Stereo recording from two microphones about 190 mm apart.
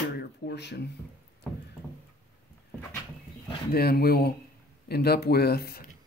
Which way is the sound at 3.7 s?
55° left (ahead or behind).